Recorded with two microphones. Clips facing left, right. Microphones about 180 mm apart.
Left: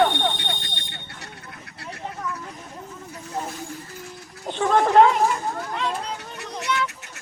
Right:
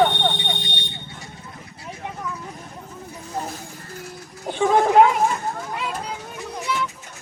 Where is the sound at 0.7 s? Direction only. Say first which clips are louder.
Right 5 dB; 70° right (ahead or behind).